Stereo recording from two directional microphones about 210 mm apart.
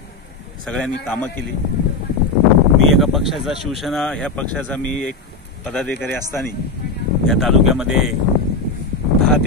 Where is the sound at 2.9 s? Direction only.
Centre (ahead or behind).